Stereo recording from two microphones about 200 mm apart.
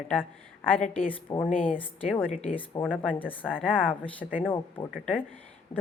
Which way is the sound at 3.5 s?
5° right (ahead or behind).